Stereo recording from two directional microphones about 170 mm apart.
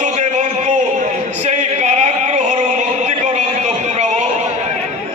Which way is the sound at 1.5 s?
40° right (ahead or behind).